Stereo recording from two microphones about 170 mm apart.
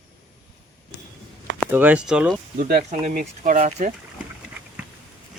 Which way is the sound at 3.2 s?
40° right (ahead or behind).